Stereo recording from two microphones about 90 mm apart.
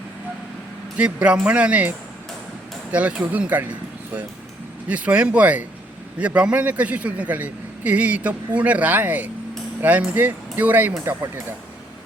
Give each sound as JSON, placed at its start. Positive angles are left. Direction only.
{"t": 0.9, "sound": "a man's voice", "side_deg": -10}
{"t": 2.9, "sound": "a man's voice", "side_deg": -15}